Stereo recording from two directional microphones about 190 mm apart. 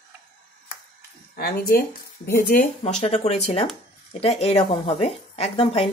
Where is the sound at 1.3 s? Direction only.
55° left (ahead or behind).